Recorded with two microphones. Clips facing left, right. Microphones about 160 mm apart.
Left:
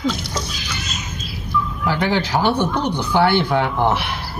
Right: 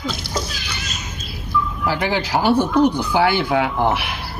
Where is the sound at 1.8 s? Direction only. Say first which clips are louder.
Left 3 dB; 5° right (ahead or behind).